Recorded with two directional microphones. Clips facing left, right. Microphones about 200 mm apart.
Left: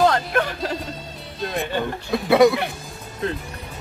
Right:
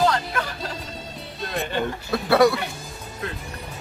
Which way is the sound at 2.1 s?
20° left (ahead or behind).